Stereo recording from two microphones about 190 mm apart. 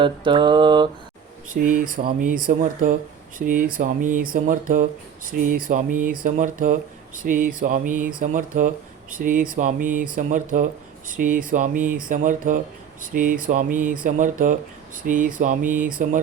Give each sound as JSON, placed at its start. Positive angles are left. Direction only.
{"t": 0.0, "sound": "mantra", "side_deg": -25}
{"t": 1.5, "sound": "speech", "side_deg": -45}